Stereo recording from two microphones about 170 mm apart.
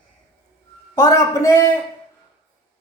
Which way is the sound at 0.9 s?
20° left (ahead or behind).